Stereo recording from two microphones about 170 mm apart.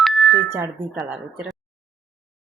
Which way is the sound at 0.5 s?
5° right (ahead or behind).